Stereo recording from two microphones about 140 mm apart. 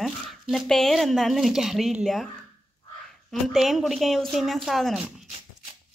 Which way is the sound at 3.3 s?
Centre (ahead or behind).